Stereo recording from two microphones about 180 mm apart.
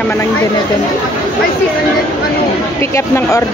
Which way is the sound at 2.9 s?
15° left (ahead or behind).